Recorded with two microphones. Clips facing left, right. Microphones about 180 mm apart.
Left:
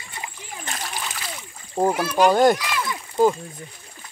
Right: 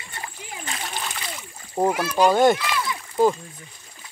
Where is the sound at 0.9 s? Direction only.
Centre (ahead or behind).